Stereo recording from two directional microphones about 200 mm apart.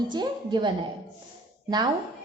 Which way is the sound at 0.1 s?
20° right (ahead or behind).